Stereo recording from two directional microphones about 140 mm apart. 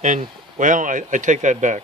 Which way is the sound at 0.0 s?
60° right (ahead or behind).